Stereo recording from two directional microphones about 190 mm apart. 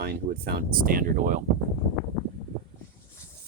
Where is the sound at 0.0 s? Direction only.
55° right (ahead or behind).